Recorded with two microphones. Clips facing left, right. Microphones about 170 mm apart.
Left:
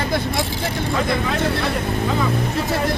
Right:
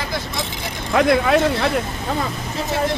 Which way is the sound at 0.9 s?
70° right (ahead or behind).